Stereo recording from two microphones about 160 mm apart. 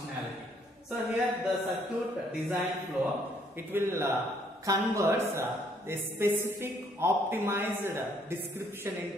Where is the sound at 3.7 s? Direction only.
15° right (ahead or behind).